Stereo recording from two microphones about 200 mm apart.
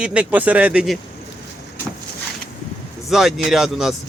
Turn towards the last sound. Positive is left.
turn(degrees=0)  # may be behind; listen again after turning